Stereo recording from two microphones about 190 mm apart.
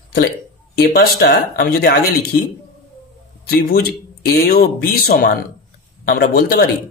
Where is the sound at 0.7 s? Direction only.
55° left (ahead or behind).